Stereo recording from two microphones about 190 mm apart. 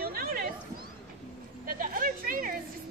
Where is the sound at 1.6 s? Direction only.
45° right (ahead or behind).